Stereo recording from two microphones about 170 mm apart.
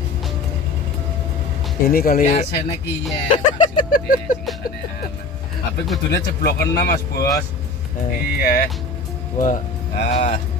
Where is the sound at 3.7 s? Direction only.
55° left (ahead or behind).